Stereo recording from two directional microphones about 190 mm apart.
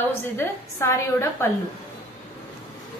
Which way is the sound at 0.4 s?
15° left (ahead or behind).